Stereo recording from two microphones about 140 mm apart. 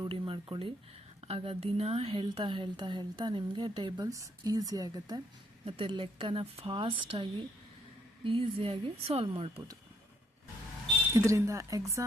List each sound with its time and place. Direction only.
0.0 s speech: 35° right (ahead or behind)
5.6 s speech: 40° right (ahead or behind)
11.1 s speech: 20° right (ahead or behind)